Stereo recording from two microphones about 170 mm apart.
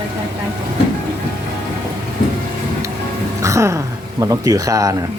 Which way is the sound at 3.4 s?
20° right (ahead or behind).